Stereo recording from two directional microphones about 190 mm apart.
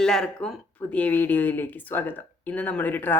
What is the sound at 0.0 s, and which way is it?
Speech, 5° left (ahead or behind).